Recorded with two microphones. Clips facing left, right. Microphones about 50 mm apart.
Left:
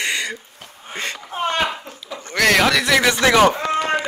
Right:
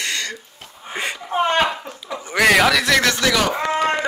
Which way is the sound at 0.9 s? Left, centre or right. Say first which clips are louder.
Right 2 dB; centre.